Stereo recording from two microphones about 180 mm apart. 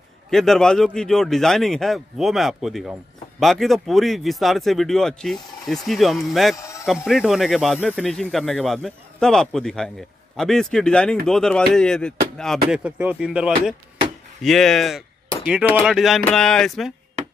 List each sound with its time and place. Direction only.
0.3 s speech: centre (ahead or behind)
6.5 s a sound: 15° left (ahead or behind)
6.9 s speech: centre (ahead or behind)
12.6 s speech: 5° right (ahead or behind)